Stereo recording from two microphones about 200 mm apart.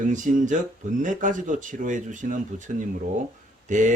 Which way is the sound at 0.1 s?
40° right (ahead or behind).